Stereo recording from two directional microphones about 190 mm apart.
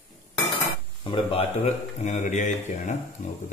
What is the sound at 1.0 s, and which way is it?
A man's voice, 30° left (ahead or behind).